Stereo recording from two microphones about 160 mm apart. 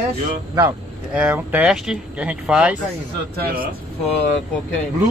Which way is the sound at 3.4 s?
65° right (ahead or behind).